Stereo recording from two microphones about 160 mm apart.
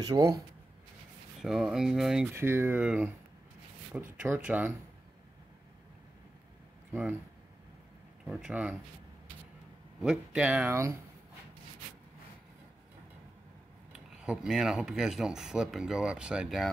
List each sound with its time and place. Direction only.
0.0 s speech: 20° right (ahead or behind)
1.4 s speech: 5° right (ahead or behind)
2.3 s speech: 15° right (ahead or behind)
4.2 s speech: 10° right (ahead or behind)
6.9 s speech: 10° right (ahead or behind)
8.3 s speech: 5° right (ahead or behind)
10.0 s speech: 5° right (ahead or behind)
13.9 s speech: 5° right (ahead or behind)